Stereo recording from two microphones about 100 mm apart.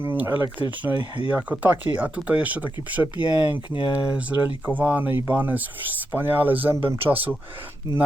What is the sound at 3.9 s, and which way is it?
Speech, 15° right (ahead or behind).